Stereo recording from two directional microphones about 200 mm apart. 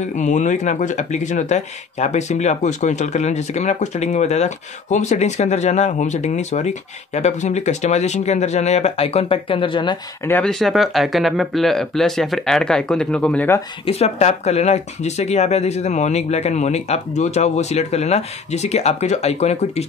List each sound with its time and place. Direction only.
0.0 s speech: 35° left (ahead or behind)
10.2 s speech: 5° left (ahead or behind)
13.8 s speech: 30° left (ahead or behind)